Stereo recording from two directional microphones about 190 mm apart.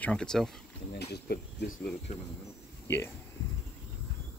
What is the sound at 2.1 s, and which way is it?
Speech, 35° left (ahead or behind).